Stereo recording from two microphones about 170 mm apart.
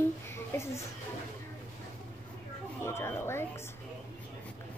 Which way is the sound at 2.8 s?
15° left (ahead or behind).